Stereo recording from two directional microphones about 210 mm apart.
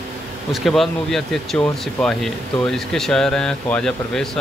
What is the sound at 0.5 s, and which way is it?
Speech, centre (ahead or behind).